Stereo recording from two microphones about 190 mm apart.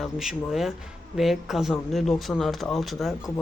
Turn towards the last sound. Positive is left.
turn(degrees=0)  # may be behind; listen again after turning